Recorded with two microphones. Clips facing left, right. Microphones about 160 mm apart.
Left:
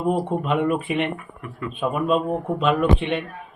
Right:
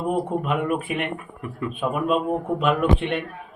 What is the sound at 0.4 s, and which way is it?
A man's voice, 5° right (ahead or behind).